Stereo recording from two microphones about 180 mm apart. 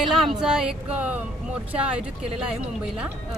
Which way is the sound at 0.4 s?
5° right (ahead or behind).